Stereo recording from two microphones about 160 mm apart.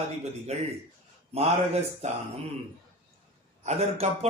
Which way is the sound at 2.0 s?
45° right (ahead or behind).